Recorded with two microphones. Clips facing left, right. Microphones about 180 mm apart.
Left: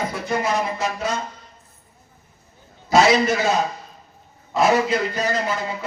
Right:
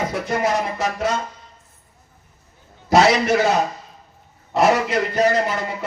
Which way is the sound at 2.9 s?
70° right (ahead or behind).